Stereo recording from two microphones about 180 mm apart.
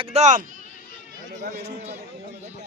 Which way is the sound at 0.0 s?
35° right (ahead or behind).